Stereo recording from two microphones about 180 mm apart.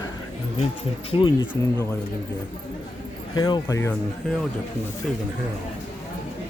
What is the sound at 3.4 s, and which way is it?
Speech, 20° left (ahead or behind).